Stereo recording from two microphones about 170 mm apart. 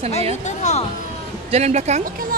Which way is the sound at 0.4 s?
45° left (ahead or behind).